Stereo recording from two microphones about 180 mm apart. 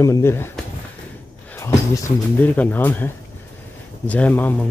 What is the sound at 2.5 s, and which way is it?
Speech, 10° left (ahead or behind).